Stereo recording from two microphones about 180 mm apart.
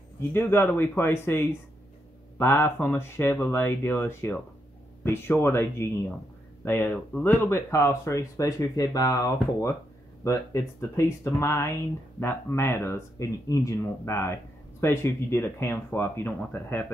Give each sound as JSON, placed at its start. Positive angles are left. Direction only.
{"t": 0.3, "sound": "speech", "side_deg": 10}